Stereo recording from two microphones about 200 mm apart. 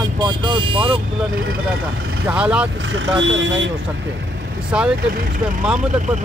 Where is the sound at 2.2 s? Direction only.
5° right (ahead or behind).